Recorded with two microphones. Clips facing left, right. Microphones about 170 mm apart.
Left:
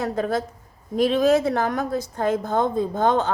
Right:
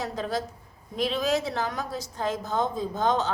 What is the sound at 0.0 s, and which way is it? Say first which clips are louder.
A woman's voice: left 6 dB; 50° left (ahead or behind).